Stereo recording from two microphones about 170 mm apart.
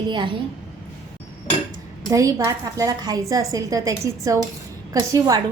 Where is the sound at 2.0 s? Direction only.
20° right (ahead or behind).